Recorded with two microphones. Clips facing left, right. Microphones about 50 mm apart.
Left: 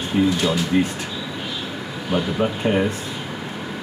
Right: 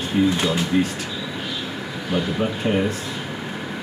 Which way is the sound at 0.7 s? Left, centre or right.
Centre.